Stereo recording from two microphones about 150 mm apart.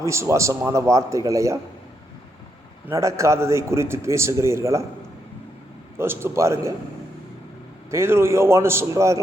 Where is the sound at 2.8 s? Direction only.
20° right (ahead or behind).